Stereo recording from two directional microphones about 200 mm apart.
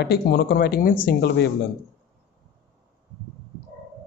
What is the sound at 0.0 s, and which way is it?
A man's voice, 55° left (ahead or behind).